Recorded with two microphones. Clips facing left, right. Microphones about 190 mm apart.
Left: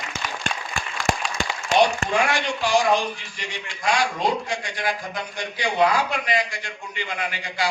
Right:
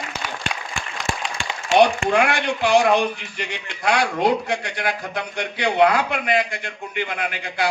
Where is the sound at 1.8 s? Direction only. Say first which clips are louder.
Right 4 dB; 60° right (ahead or behind).